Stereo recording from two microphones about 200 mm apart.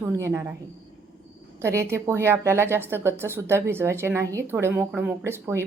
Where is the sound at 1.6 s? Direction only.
15° right (ahead or behind).